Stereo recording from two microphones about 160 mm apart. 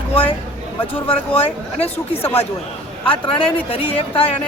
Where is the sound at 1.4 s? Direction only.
40° left (ahead or behind).